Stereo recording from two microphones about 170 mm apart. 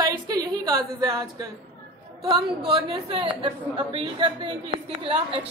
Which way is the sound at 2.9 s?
30° right (ahead or behind).